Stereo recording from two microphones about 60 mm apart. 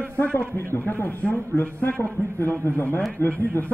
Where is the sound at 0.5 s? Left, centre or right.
Left.